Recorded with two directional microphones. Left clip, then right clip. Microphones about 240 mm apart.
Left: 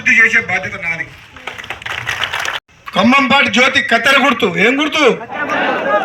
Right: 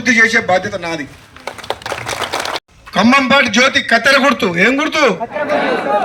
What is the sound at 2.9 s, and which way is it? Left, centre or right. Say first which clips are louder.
A man's voice: even; centre.